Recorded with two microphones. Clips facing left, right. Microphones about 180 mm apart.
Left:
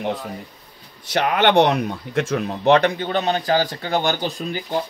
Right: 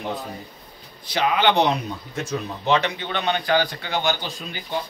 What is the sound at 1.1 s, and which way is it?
Speech, 65° left (ahead or behind).